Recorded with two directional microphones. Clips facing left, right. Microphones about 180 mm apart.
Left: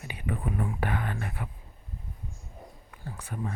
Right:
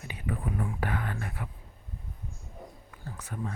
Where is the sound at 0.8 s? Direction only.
20° left (ahead or behind).